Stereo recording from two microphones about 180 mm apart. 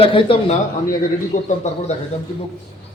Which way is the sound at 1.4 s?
40° left (ahead or behind).